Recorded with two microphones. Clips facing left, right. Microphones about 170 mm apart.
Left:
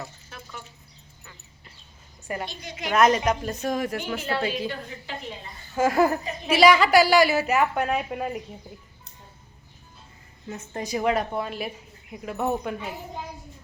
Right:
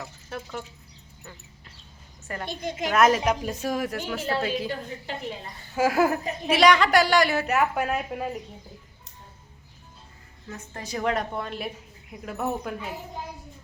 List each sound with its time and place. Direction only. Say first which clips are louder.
0.3 s a sound: right 7 dB; 55° right (ahead or behind)
2.2 s a woman's voice: left 3 dB; 10° left (ahead or behind)
2.5 s a woman's voice: right 6 dB; 50° right (ahead or behind)
2.9 s a woman's voice: left 1 dB; 5° right (ahead or behind)
5.7 s a woman's voice: left 1 dB; 5° right (ahead or behind)
10.5 s a woman's voice: left 4 dB; 15° left (ahead or behind); by 12.9 s centre (ahead or behind)